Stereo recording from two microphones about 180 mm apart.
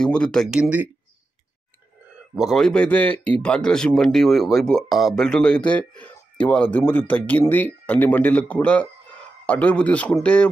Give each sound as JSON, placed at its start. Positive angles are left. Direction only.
{"t": 0.0, "sound": "speech", "side_deg": 5}
{"t": 2.3, "sound": "speech", "side_deg": 0}